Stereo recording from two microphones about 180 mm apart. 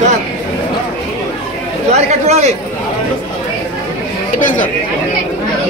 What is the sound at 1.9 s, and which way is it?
Chatter, 35° right (ahead or behind).